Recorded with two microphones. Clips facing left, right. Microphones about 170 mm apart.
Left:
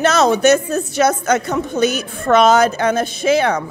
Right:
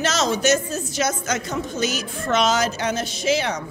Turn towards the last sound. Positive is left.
turn(degrees=55)  # may be behind; listen again after turning